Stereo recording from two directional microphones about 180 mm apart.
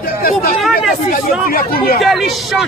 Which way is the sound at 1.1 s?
55° left (ahead or behind).